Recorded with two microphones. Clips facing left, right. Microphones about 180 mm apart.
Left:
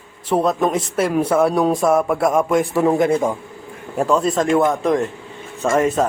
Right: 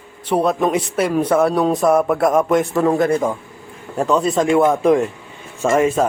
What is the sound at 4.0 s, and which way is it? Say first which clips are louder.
A man's voice: right 1 dB; centre (ahead or behind).